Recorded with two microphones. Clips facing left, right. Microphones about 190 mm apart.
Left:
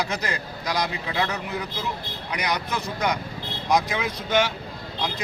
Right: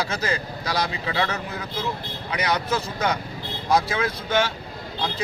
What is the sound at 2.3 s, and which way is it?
Speech, 10° left (ahead or behind).